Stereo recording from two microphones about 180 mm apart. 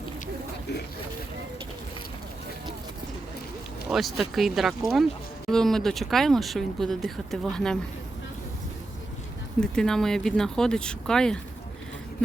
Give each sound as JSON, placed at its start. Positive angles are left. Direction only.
{"t": 0.7, "sound": "speech", "side_deg": 65}
{"t": 3.8, "sound": "speech", "side_deg": 0}
{"t": 9.6, "sound": "speech", "side_deg": 5}